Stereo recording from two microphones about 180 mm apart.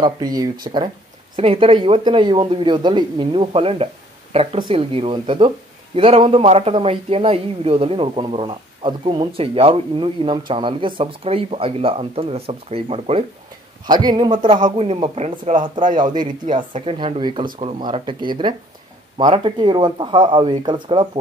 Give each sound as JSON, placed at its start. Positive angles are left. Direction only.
{"t": 0.0, "sound": "speech", "side_deg": -20}
{"t": 15.5, "sound": "speech", "side_deg": -25}